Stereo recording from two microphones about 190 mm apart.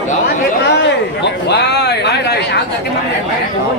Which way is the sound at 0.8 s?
65° left (ahead or behind).